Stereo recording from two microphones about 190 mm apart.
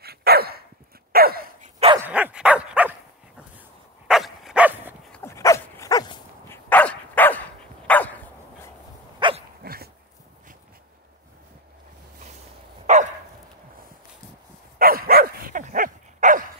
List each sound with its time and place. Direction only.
0.0 s dog: 55° right (ahead or behind)
1.1 s a sound: 50° right (ahead or behind)
2.0 s dog: 10° right (ahead or behind)
5.1 s dog: 15° left (ahead or behind)
6.5 s dog: 10° left (ahead or behind)
9.2 s dog: 25° right (ahead or behind)
9.6 s dog: 55° right (ahead or behind)
12.8 s dog: 40° right (ahead or behind)
14.8 s dog: 50° right (ahead or behind)